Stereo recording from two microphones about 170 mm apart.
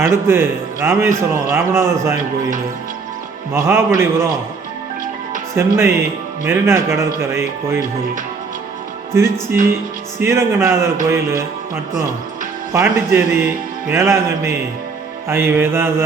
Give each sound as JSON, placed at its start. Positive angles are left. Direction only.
{"t": 0.0, "sound": "a man's voice", "side_deg": -15}
{"t": 3.5, "sound": "a man's voice", "side_deg": -15}
{"t": 5.5, "sound": "a man's voice", "side_deg": -15}
{"t": 9.1, "sound": "a man's voice", "side_deg": -15}
{"t": 12.7, "sound": "a man's voice", "side_deg": -15}